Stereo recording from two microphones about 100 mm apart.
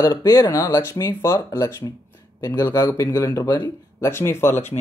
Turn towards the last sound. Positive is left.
turn(degrees=25)  # may be behind; listen again after turning